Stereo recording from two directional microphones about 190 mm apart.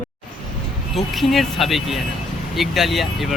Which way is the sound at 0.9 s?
Centre (ahead or behind).